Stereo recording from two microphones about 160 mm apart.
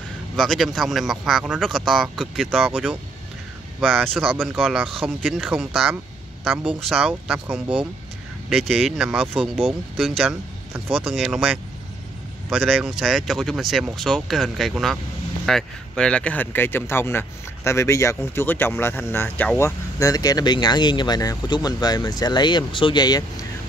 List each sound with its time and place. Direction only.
0.4 s speech: centre (ahead or behind)
4.3 s speech: 10° right (ahead or behind); by 23.4 s 25° left (ahead or behind)